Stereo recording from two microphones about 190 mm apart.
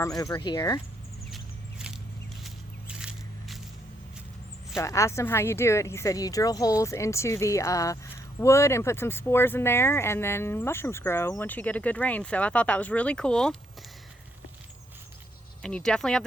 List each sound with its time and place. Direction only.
0.0 s speech: 15° left (ahead or behind)
2.4 s a sound: 5° right (ahead or behind)
4.8 s speech: 15° left (ahead or behind)
15.6 s speech: 5° left (ahead or behind)